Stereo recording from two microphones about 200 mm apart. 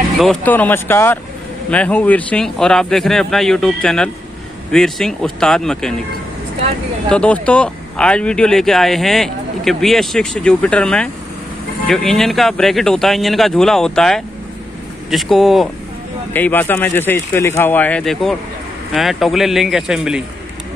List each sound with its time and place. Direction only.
0.2 s speech: 5° left (ahead or behind)
7.1 s speech: 5° left (ahead or behind)